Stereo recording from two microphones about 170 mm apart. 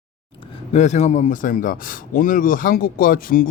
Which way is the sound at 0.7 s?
40° left (ahead or behind).